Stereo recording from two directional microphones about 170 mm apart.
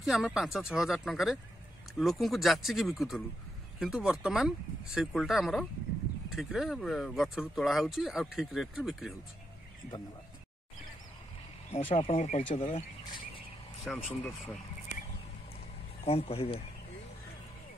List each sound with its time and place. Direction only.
0.0 s speech: 5° right (ahead or behind)
11.7 s speech: 30° left (ahead or behind)
12.2 s speech: 40° left (ahead or behind)
13.9 s speech: centre (ahead or behind)
16.0 s speech: 35° left (ahead or behind)